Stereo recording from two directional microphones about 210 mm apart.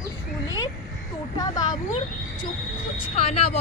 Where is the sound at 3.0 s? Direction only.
30° left (ahead or behind).